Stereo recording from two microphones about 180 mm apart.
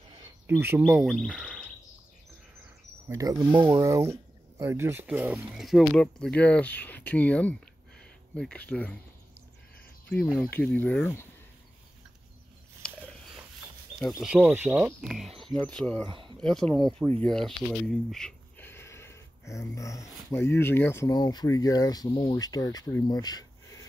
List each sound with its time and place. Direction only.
0.5 s speech: 10° right (ahead or behind)
3.1 s speech: 20° right (ahead or behind); by 8.9 s 10° left (ahead or behind)
10.0 s speech: 10° left (ahead or behind)
12.8 s a sound: 5° left (ahead or behind)
13.9 s speech: centre (ahead or behind)
16.1 s a sound: 25° right (ahead or behind)
16.3 s speech: 5° left (ahead or behind); by 23.9 s 20° left (ahead or behind)